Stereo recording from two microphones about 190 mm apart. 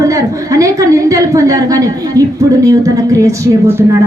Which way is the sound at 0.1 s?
15° right (ahead or behind).